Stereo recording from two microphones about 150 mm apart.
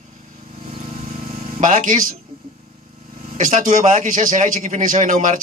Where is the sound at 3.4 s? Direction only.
60° right (ahead or behind).